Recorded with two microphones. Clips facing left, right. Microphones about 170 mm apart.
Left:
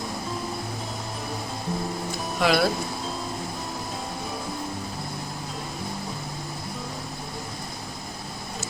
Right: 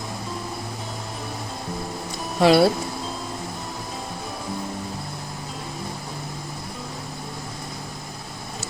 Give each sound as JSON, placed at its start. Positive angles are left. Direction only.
{"t": 2.4, "sound": "speech", "side_deg": -30}